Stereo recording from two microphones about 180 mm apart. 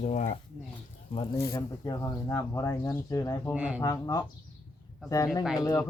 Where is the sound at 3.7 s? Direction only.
15° left (ahead or behind).